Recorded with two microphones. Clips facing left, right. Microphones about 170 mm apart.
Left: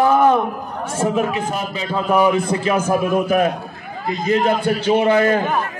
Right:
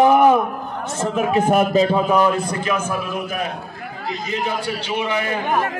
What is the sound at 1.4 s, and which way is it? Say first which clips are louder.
Speech: right 8 dB; 60° right (ahead or behind).